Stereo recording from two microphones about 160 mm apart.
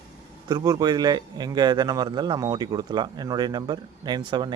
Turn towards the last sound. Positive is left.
turn(degrees=-30)  # may be behind; listen again after turning